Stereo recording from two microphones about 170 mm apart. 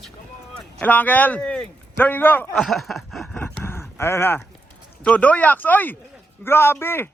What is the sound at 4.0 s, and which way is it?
A man's voice, 15° left (ahead or behind).